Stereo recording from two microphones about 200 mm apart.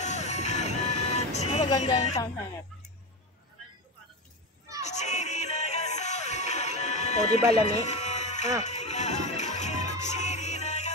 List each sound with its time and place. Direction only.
0.0 s music: 35° left (ahead or behind)
2.0 s speech: 35° left (ahead or behind)
4.8 s music: 35° left (ahead or behind)
7.6 s a sound: 35° left (ahead or behind)
8.6 s music: 35° left (ahead or behind)